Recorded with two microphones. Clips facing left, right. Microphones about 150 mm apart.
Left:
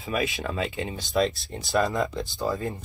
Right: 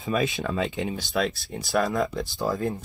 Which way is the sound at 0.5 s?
20° right (ahead or behind).